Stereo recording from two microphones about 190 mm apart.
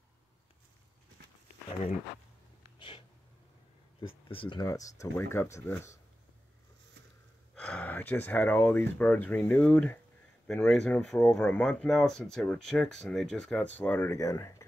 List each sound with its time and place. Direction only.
4.3 s speech: 25° left (ahead or behind)
7.5 s speech: 5° left (ahead or behind)